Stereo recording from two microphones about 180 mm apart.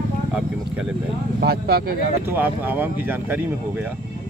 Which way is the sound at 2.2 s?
10° right (ahead or behind).